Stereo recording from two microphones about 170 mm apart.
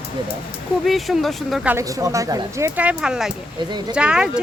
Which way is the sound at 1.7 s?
20° right (ahead or behind).